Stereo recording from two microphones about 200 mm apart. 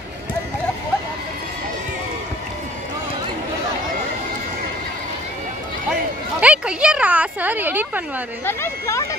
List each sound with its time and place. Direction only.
6.4 s speech: 5° right (ahead or behind)
8.5 s speech: 10° left (ahead or behind)